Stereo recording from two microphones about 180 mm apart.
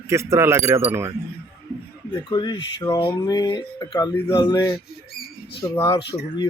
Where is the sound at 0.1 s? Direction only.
15° right (ahead or behind).